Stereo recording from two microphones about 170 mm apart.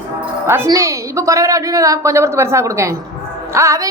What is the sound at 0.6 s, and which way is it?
A woman's voice, 15° right (ahead or behind).